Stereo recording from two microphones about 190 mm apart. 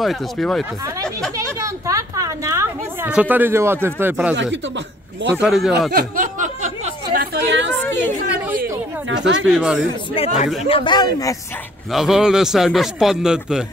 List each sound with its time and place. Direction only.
0.0 s a man's voice: centre (ahead or behind)
1.3 s a woman's voice: 15° right (ahead or behind)
4.4 s speech: 70° right (ahead or behind)
5.4 s a man's voice: 5° right (ahead or behind)
5.9 s a sound: 50° right (ahead or behind)
7.3 s a sound: 65° right (ahead or behind)
9.2 s speech: 80° right
9.5 s a man's voice: 5° right (ahead or behind)
10.1 s speech: 35° left (ahead or behind)
11.9 s a man's voice: centre (ahead or behind)